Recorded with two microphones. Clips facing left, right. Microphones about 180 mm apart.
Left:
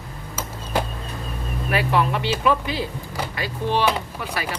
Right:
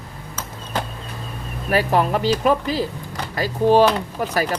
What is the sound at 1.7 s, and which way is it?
Speech, 40° right (ahead or behind).